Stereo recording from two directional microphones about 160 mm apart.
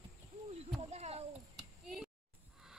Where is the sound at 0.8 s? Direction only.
40° right (ahead or behind).